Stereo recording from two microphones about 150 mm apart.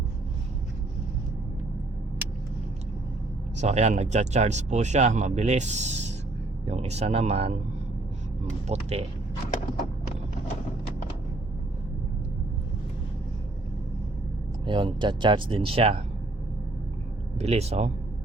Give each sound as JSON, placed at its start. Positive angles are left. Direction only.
{"t": 3.6, "sound": "speech", "side_deg": -45}
{"t": 8.6, "sound": "speech", "side_deg": -45}
{"t": 14.7, "sound": "speech", "side_deg": -35}
{"t": 17.3, "sound": "speech", "side_deg": -45}